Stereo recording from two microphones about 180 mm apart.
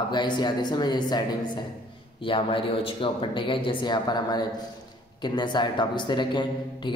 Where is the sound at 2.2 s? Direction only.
30° left (ahead or behind).